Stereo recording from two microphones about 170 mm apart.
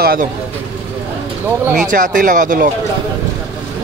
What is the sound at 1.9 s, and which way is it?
Speech, 50° right (ahead or behind).